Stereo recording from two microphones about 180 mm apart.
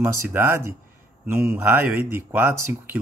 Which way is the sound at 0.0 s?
15° right (ahead or behind).